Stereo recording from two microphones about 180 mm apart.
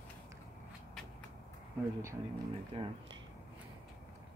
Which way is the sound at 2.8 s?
30° right (ahead or behind).